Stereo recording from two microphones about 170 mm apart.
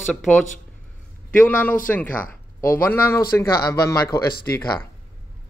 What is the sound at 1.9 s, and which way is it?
Speech, 10° left (ahead or behind).